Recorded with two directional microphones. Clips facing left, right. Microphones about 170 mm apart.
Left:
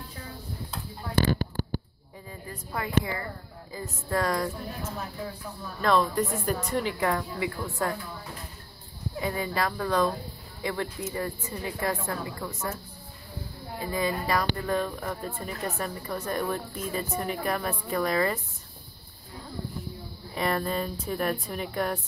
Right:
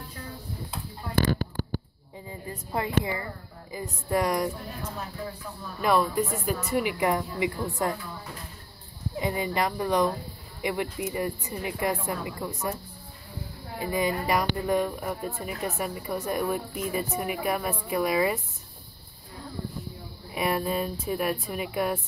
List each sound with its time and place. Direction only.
2.2 s speech: 20° right (ahead or behind)
5.8 s speech: 10° right (ahead or behind)
9.2 s speech: 20° right (ahead or behind)
13.7 s speech: 15° right (ahead or behind)
20.3 s speech: 10° right (ahead or behind)